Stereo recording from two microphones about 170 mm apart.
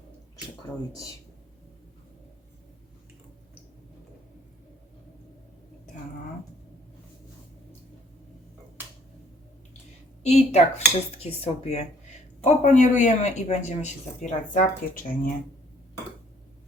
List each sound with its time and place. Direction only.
10.2 s speech: 40° left (ahead or behind)